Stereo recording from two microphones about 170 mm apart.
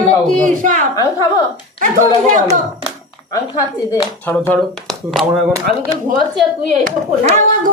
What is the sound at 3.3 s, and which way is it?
A woman's voice, 20° left (ahead or behind).